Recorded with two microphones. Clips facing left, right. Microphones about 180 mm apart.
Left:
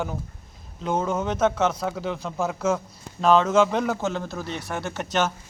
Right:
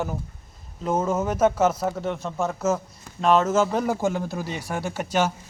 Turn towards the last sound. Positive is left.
turn(degrees=-10)  # may be behind; listen again after turning